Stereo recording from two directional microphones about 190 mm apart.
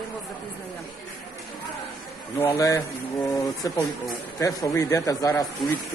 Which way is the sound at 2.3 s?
15° left (ahead or behind).